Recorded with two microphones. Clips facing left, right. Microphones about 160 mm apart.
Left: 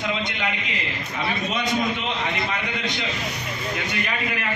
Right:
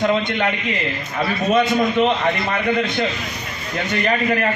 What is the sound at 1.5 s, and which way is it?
A man's voice, 55° right (ahead or behind).